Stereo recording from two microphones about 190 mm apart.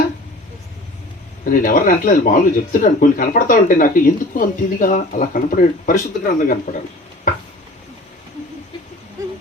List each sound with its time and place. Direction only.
1.5 s speech: 45° left (ahead or behind)